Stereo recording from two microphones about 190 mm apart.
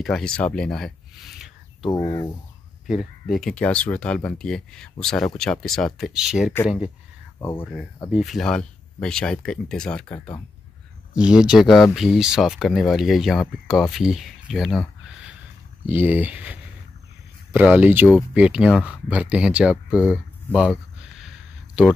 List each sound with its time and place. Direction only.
0.0 s speech: 5° left (ahead or behind)
1.9 s speech: 20° left (ahead or behind)
2.9 s speech: centre (ahead or behind)
7.3 s speech: 10° left (ahead or behind)
8.1 s speech: centre (ahead or behind)
11.1 s speech: 5° right (ahead or behind)